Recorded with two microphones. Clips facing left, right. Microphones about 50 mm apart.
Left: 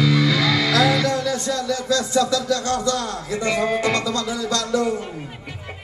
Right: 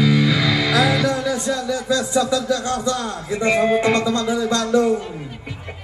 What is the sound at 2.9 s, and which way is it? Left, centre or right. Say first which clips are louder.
Speech: right 1 dB; right.